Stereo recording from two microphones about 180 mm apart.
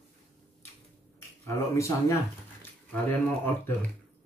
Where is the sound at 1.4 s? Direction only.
15° left (ahead or behind).